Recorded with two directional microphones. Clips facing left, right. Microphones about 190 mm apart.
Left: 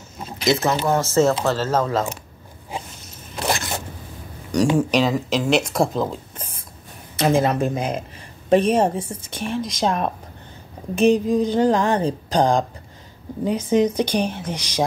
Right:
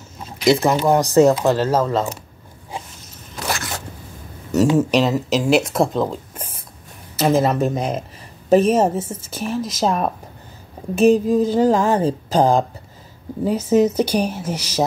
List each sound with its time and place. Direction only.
0.6 s speech: 15° right (ahead or behind)
3.3 s zipper: 20° left (ahead or behind)
4.7 s speech: 5° right (ahead or behind)